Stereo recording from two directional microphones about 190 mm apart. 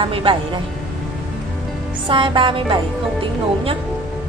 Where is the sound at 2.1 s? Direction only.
25° right (ahead or behind).